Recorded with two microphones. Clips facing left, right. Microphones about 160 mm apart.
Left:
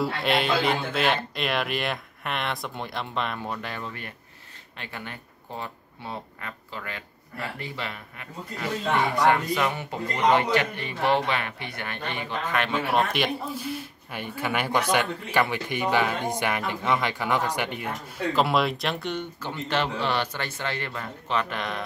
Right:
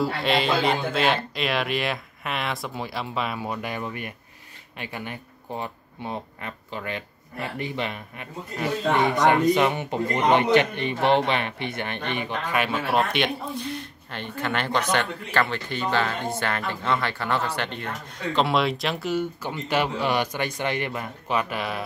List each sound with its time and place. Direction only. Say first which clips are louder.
0.0 s a man's voice: right 2 dB; centre (ahead or behind)